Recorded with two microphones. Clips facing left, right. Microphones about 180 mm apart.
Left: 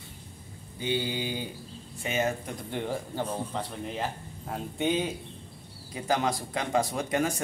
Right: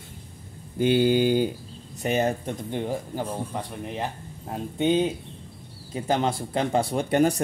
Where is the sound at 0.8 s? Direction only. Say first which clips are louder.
Right 11 dB; 85° right.